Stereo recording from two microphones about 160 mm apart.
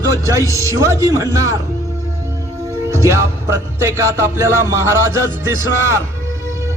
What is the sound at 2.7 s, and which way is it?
Speech, 15° right (ahead or behind).